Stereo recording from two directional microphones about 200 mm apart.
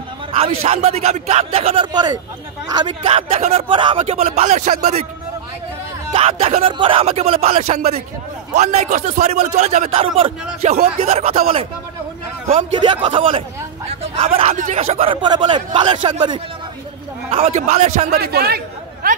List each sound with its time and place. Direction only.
0.4 s a man's voice: 30° right (ahead or behind)
6.1 s a man's voice: 30° right (ahead or behind)
18.1 s speech: 50° right (ahead or behind)